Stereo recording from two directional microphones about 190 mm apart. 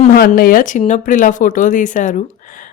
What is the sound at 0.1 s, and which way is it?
Speech, 55° left (ahead or behind).